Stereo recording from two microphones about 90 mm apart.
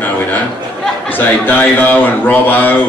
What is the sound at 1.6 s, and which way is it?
Speech, 20° left (ahead or behind).